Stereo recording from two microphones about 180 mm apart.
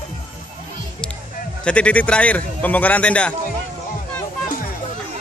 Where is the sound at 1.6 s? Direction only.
5° left (ahead or behind).